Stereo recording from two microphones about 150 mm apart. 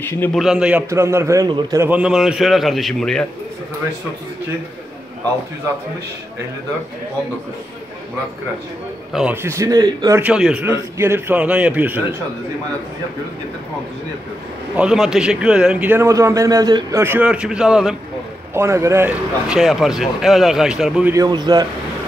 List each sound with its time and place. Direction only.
0.3 s speech: centre (ahead or behind)
0.8 s a man's voice: 20° right (ahead or behind)
1.9 s speech: 5° right (ahead or behind)
9.1 s a man's voice: 10° right (ahead or behind)
10.2 s a man's voice: 5° right (ahead or behind)
14.8 s a man's voice: 5° right (ahead or behind)
18.5 s a man's voice: 20° right (ahead or behind)
19.5 s speech: centre (ahead or behind)
21.1 s a man's voice: 25° right (ahead or behind)